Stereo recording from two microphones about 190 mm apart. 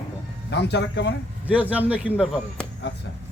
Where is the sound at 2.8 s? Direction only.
65° left (ahead or behind).